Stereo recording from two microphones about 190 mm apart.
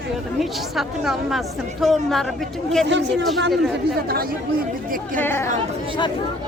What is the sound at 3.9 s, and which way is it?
Speech, 55° right (ahead or behind).